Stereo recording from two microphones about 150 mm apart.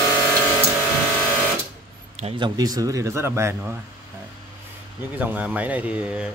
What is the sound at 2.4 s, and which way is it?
Speech, 25° right (ahead or behind).